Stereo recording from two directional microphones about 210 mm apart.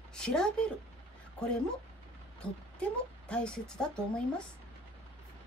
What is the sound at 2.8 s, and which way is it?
Speech, 5° left (ahead or behind).